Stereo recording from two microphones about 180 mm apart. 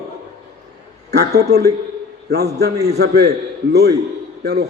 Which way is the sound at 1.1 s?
65° right (ahead or behind).